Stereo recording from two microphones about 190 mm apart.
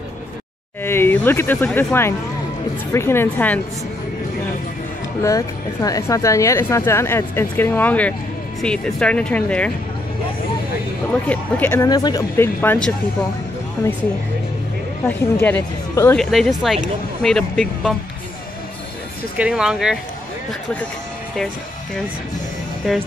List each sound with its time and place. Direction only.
0.8 s speech: 10° left (ahead or behind)
5.2 s speech: 15° left (ahead or behind)
11.2 s speech: 10° left (ahead or behind)
15.0 s speech: 10° left (ahead or behind)
16.2 s speech: centre (ahead or behind)
19.3 s speech: 5° right (ahead or behind)
22.8 s speech: centre (ahead or behind)